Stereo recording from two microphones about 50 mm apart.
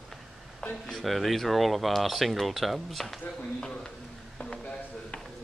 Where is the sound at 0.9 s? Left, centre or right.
Centre.